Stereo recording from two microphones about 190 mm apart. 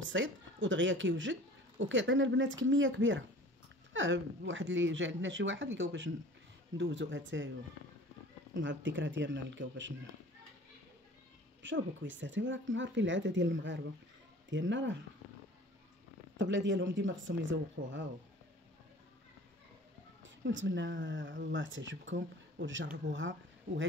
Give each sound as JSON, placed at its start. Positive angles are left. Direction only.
{"t": 0.1, "sound": "speech", "side_deg": -80}
{"t": 8.5, "sound": "speech", "side_deg": -75}
{"t": 11.6, "sound": "speech", "side_deg": -80}
{"t": 16.3, "sound": "speech", "side_deg": -75}
{"t": 20.2, "sound": "speech", "side_deg": -70}